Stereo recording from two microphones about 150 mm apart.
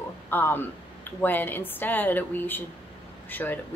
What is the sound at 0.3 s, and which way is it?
Speech, 15° left (ahead or behind).